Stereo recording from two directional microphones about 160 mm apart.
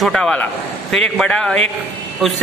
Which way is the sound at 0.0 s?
5° left (ahead or behind).